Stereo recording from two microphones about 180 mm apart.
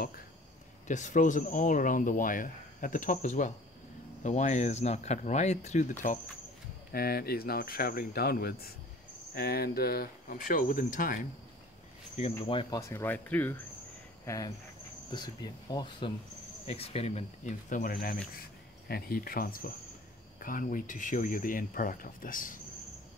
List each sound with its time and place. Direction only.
0.8 s speech: 45° left (ahead or behind)
6.9 s speech: 55° left (ahead or behind)
12.2 s speech: 30° left (ahead or behind)
12.8 s speech: 10° left (ahead or behind); by 22.6 s 50° left (ahead or behind)